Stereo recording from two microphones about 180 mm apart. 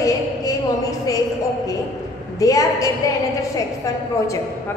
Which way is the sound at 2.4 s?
20° left (ahead or behind).